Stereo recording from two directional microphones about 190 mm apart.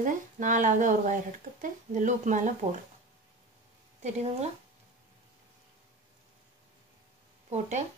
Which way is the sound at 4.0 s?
35° right (ahead or behind).